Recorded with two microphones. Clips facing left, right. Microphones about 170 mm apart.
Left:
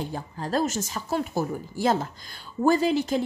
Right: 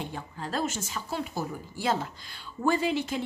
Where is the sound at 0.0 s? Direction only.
40° left (ahead or behind).